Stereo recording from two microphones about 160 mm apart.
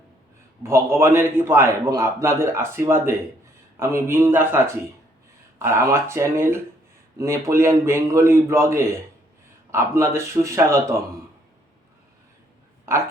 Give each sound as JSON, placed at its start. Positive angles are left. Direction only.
{"t": 0.6, "sound": "a man's voice", "side_deg": -15}
{"t": 12.9, "sound": "a man's voice", "side_deg": -15}